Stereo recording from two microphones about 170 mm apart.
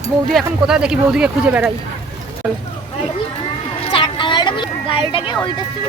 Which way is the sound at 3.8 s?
30° left (ahead or behind).